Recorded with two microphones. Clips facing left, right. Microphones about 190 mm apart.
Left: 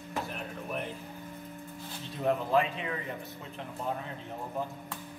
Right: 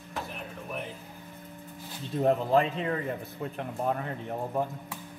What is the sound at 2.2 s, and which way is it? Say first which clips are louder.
Speech: right 3 dB; 40° right (ahead or behind).